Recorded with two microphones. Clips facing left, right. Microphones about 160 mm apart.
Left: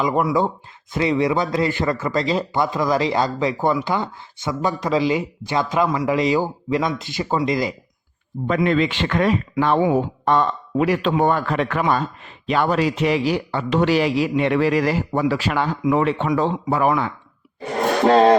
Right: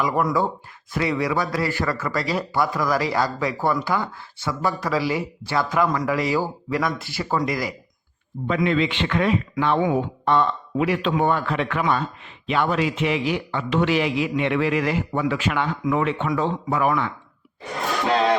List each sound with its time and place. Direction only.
0.0 s a man's voice: 25° left (ahead or behind)
8.4 s a man's voice: 45° left (ahead or behind)
17.7 s a sound: 45° left (ahead or behind)